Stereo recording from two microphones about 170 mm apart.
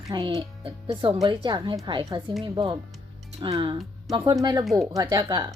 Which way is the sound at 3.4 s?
30° right (ahead or behind).